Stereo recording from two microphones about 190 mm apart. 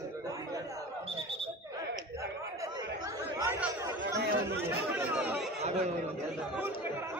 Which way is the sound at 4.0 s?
75° right (ahead or behind).